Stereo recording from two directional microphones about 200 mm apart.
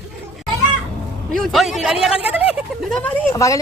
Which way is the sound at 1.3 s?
Centre (ahead or behind).